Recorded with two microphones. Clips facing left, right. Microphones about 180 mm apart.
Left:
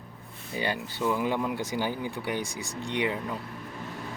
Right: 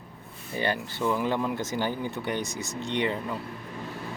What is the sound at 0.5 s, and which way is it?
Speech, 15° left (ahead or behind).